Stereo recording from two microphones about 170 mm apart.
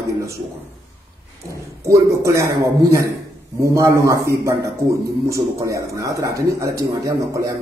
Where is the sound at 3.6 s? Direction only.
15° right (ahead or behind).